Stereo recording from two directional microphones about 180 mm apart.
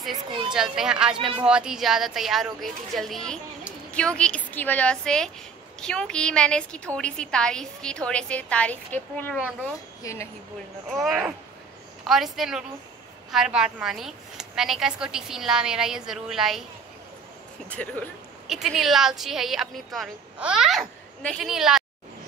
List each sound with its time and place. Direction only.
0.5 s a woman's voice: 5° right (ahead or behind)
9.4 s speech: 5° right (ahead or behind)
10.0 s speech: 20° left (ahead or behind)
10.9 s a woman's voice: 5° right (ahead or behind)
17.6 s a woman's voice: 10° left (ahead or behind)